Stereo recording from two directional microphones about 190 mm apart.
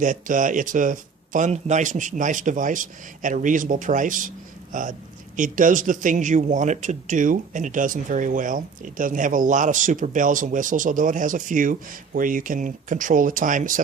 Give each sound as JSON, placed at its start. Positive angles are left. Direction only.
{"t": 0.0, "sound": "speech", "side_deg": -45}